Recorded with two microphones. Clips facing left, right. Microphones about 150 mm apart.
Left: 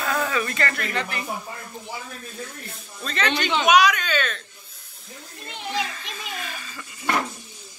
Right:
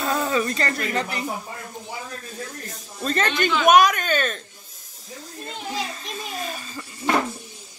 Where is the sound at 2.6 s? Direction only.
45° right (ahead or behind).